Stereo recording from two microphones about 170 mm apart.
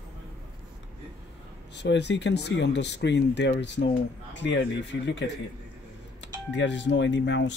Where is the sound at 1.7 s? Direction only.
90° left.